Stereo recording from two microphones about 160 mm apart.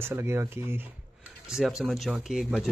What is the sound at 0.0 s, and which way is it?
Speech, 15° right (ahead or behind).